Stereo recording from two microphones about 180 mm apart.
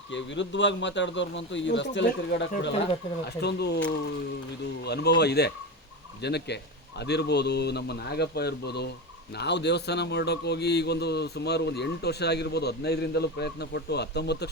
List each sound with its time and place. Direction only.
0.1 s a man's voice: 85° left
3.4 s a man's voice: 70° left (ahead or behind)
4.8 s a man's voice: 65° left (ahead or behind)